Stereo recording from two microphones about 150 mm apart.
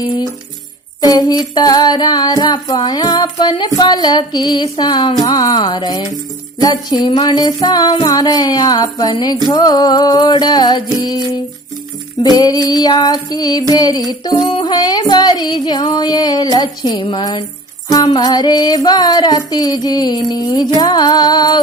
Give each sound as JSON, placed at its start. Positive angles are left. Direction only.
{"t": 1.0, "sound": "music", "side_deg": 25}
{"t": 12.2, "sound": "music", "side_deg": 25}